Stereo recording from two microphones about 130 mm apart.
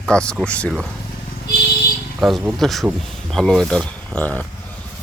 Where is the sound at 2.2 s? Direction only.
Centre (ahead or behind).